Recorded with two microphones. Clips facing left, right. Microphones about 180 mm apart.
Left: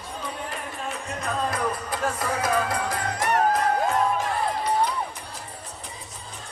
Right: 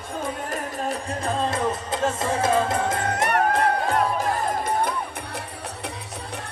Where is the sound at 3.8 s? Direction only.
40° right (ahead or behind).